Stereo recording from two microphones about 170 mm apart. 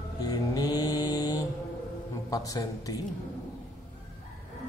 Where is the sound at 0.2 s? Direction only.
20° left (ahead or behind).